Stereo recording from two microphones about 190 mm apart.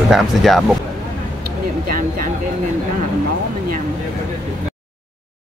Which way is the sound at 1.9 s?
50° right (ahead or behind).